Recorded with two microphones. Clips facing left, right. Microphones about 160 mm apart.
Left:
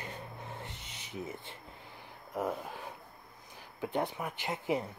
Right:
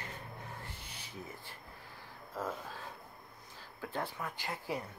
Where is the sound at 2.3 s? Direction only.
20° left (ahead or behind).